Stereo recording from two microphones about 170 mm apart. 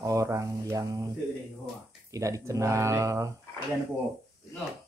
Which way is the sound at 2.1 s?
20° right (ahead or behind).